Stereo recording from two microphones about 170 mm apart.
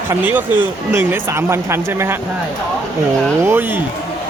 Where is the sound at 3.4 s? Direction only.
10° right (ahead or behind).